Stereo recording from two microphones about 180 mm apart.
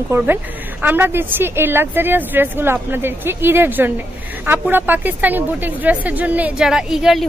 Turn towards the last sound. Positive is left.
turn(degrees=-5)  # may be behind; listen again after turning